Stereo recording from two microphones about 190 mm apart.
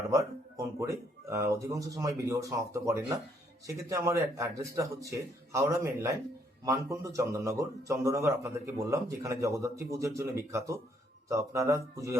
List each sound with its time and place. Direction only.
0.1 s speech: 15° right (ahead or behind)